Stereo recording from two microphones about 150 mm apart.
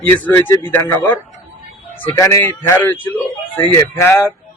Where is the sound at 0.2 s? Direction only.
15° left (ahead or behind).